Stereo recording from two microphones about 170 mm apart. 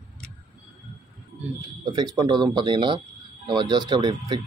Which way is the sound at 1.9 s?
25° right (ahead or behind).